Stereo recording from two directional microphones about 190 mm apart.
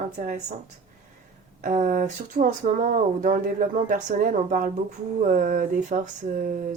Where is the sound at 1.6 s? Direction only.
45° right (ahead or behind).